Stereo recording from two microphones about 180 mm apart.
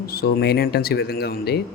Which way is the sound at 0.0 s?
60° left (ahead or behind).